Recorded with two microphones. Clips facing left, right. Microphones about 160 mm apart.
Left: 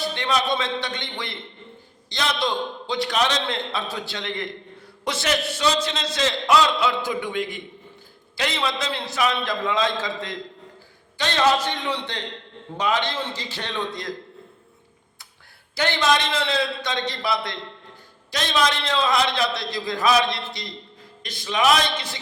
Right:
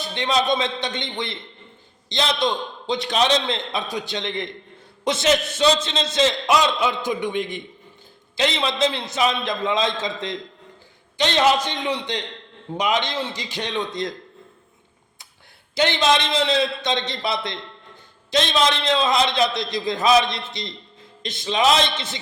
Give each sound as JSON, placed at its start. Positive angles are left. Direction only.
{"t": 0.0, "sound": "a man's voice", "side_deg": -20}
{"t": 15.7, "sound": "a man's voice", "side_deg": -20}